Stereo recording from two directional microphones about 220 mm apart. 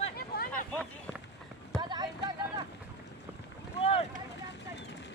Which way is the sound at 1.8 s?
20° right (ahead or behind).